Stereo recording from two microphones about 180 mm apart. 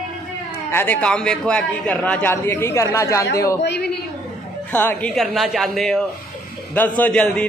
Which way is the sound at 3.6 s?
70° left (ahead or behind).